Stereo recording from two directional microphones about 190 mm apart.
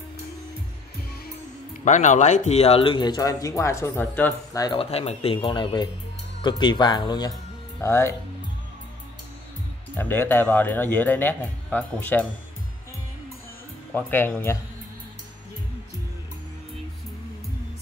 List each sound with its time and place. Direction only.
1.9 s speech: 40° left (ahead or behind); by 4.6 s 10° left (ahead or behind)
4.6 s a man's voice: 30° left (ahead or behind); by 8.1 s 15° left (ahead or behind)
9.9 s a man's voice: 10° left (ahead or behind)
13.9 s a man's voice: 10° left (ahead or behind)